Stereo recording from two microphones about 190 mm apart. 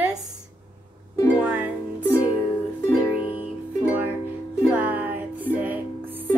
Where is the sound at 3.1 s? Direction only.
30° left (ahead or behind).